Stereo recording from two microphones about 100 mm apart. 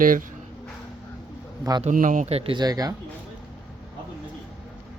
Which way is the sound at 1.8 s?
90° right.